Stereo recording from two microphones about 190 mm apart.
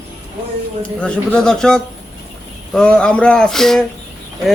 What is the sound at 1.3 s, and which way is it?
Speech, 5° left (ahead or behind).